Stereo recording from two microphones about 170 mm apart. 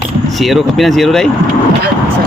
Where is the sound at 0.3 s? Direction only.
Centre (ahead or behind).